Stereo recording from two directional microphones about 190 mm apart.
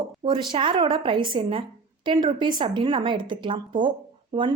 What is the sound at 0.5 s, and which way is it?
Speech, 25° right (ahead or behind).